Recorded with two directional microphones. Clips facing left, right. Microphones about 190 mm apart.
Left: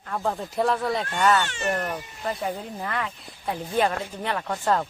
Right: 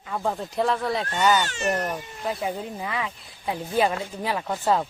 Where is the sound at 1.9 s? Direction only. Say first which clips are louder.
Right 1 dB; 5° right (ahead or behind).